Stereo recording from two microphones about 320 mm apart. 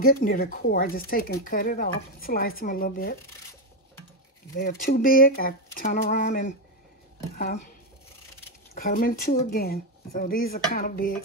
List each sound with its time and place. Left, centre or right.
0.0 s speech: left
4.6 s speech: left
8.7 s speech: left